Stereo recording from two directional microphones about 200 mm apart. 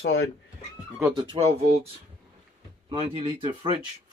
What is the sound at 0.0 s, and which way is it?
Speech, 60° left (ahead or behind).